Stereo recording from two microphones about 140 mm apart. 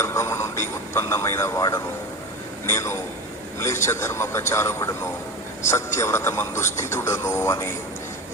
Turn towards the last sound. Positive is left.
turn(degrees=20)  # may be behind; listen again after turning